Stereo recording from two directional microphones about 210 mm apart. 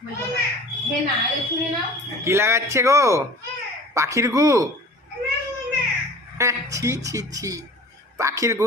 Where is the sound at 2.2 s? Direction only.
10° right (ahead or behind).